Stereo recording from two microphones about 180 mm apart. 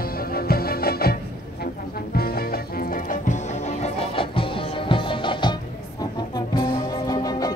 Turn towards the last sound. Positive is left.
turn(degrees=20)  # may be behind; listen again after turning